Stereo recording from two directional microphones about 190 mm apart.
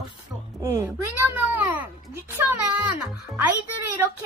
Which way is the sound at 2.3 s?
10° right (ahead or behind).